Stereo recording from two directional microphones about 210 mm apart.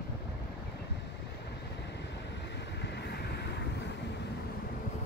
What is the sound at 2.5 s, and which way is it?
Vehicle, 55° left (ahead or behind).